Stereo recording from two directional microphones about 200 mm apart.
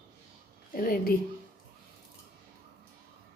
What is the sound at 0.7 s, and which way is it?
Speech, 45° left (ahead or behind).